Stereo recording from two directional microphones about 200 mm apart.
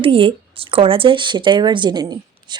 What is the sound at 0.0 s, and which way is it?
Speech, 25° right (ahead or behind).